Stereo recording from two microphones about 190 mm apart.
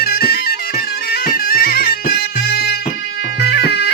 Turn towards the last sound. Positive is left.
turn(degrees=60)  # may be behind; listen again after turning